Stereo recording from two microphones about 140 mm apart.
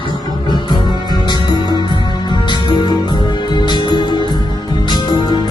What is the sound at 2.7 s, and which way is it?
Music, 35° left (ahead or behind).